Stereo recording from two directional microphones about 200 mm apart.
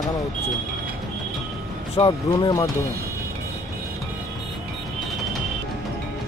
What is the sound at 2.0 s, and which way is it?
Speech, 25° left (ahead or behind).